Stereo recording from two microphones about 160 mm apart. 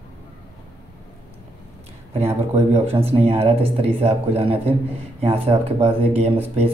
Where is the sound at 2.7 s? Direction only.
40° right (ahead or behind).